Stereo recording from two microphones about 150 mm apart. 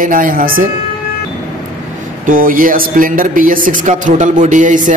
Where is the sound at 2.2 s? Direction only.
65° right (ahead or behind).